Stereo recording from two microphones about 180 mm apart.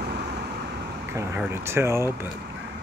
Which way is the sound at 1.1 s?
15° right (ahead or behind).